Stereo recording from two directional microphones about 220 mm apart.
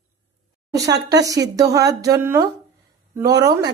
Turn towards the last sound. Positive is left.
turn(degrees=-15)  # may be behind; listen again after turning